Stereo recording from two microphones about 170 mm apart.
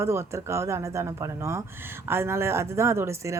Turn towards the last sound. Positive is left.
turn(degrees=-15)  # may be behind; listen again after turning